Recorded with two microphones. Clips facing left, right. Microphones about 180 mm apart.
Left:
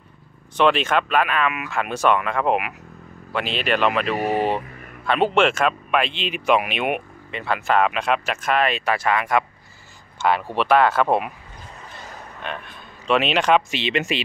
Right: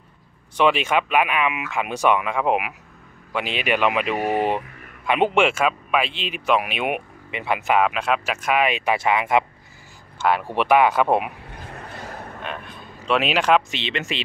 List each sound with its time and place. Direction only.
0.6 s speech: 10° right (ahead or behind)
7.2 s speech: 15° right (ahead or behind)
7.8 s speech: 5° right (ahead or behind)
11.7 s a sound: 60° right (ahead or behind)
12.4 s speech: 5° right (ahead or behind)
13.7 s speech: 10° left (ahead or behind)